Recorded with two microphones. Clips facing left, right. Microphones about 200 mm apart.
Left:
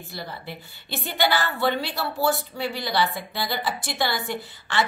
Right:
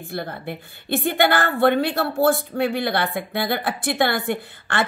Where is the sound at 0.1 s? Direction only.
55° right (ahead or behind).